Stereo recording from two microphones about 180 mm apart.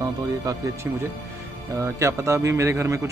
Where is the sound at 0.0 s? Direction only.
20° right (ahead or behind).